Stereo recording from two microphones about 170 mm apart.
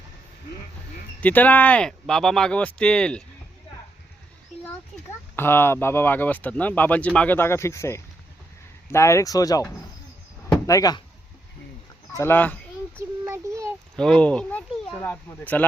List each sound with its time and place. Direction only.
1.2 s speech: 10° left (ahead or behind)
5.4 s speech: 15° left (ahead or behind)
12.1 s speech: 15° left (ahead or behind)
13.0 s a sound: 15° right (ahead or behind)
13.9 s speech: 5° left (ahead or behind)